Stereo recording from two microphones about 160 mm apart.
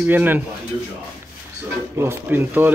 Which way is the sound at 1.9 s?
15° right (ahead or behind).